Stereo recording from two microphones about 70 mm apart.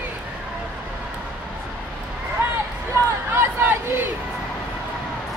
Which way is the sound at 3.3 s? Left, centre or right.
Right.